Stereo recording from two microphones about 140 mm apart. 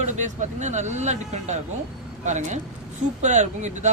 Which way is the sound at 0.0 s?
55° right (ahead or behind).